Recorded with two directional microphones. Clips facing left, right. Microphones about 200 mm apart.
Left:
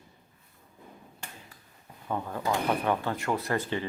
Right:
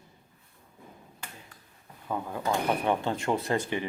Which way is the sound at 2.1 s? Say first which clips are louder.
Even; 10° right (ahead or behind).